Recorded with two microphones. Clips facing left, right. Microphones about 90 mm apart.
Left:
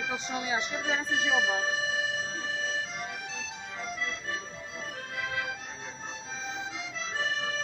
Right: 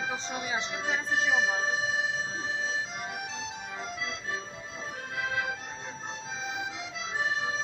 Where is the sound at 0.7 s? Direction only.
15° right (ahead or behind).